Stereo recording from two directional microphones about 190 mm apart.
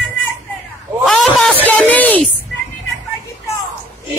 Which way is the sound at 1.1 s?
Centre (ahead or behind).